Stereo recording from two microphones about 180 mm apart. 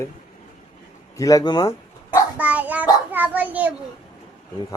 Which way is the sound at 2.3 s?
10° right (ahead or behind).